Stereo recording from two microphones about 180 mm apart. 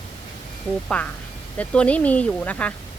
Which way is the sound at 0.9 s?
10° left (ahead or behind).